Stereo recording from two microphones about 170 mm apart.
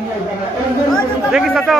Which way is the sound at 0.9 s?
Centre (ahead or behind).